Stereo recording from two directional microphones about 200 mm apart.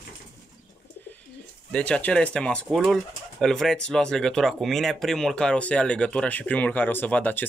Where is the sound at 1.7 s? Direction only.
5° left (ahead or behind).